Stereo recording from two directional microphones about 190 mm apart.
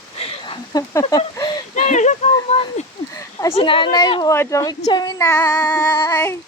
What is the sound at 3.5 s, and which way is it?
Speech, 25° left (ahead or behind).